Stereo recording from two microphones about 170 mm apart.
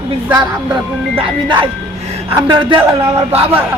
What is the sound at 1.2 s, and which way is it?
Speech, 30° right (ahead or behind).